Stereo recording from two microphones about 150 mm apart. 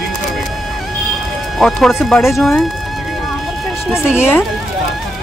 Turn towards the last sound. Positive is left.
turn(degrees=15)  # may be behind; listen again after turning